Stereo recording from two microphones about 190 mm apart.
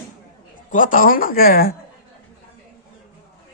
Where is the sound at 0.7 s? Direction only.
45° left (ahead or behind).